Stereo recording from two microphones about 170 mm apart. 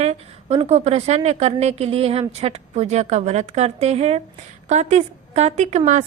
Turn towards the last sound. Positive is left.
turn(degrees=-45)  # may be behind; listen again after turning